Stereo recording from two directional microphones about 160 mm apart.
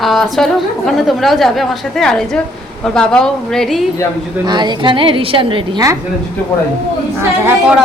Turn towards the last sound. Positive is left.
turn(degrees=-10)  # may be behind; listen again after turning